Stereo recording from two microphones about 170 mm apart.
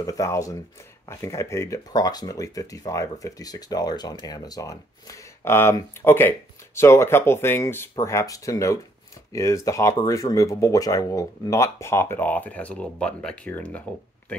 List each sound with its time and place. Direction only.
0.0 s speech: 20° left (ahead or behind)